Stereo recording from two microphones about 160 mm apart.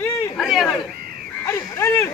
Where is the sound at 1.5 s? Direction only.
20° left (ahead or behind).